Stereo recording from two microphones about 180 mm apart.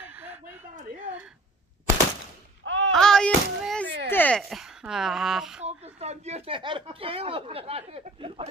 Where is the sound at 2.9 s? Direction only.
5° left (ahead or behind).